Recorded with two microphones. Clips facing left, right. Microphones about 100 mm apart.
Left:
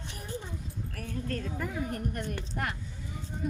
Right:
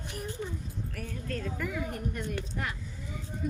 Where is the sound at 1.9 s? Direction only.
50° left (ahead or behind).